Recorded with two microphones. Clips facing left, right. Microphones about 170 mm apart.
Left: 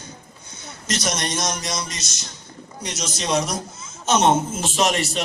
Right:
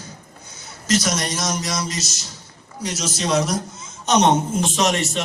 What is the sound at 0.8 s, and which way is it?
A man's voice, 5° right (ahead or behind).